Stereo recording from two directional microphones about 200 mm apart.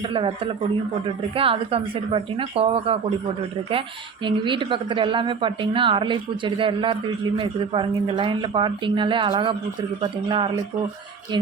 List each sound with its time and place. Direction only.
0.1 s a woman's voice: 25° right (ahead or behind)